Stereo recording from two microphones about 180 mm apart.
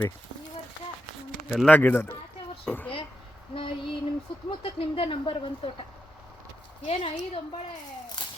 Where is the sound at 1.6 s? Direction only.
10° left (ahead or behind).